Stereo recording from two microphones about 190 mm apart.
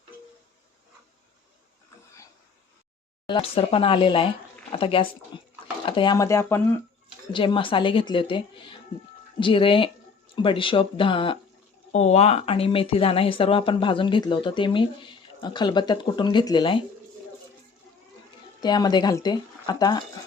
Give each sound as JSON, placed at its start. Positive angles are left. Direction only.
{"t": 3.2, "sound": "speech", "side_deg": 25}
{"t": 7.3, "sound": "speech", "side_deg": 25}
{"t": 18.6, "sound": "speech", "side_deg": 20}